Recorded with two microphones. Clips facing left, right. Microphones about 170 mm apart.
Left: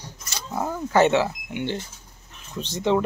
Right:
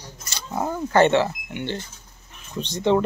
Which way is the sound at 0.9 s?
5° left (ahead or behind).